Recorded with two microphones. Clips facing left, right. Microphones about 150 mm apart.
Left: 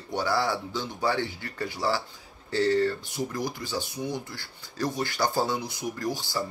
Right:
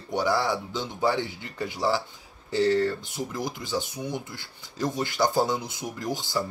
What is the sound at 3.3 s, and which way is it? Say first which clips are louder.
Speech: right 1 dB; 20° right (ahead or behind).